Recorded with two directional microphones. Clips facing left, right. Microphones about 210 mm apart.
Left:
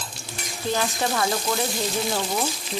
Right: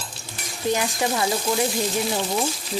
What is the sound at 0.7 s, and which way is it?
Speech, 15° right (ahead or behind).